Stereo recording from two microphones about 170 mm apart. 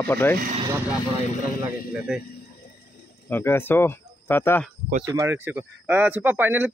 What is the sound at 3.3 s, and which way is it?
Speech, 15° left (ahead or behind).